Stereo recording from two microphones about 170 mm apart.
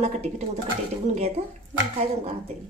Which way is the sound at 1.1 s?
35° right (ahead or behind).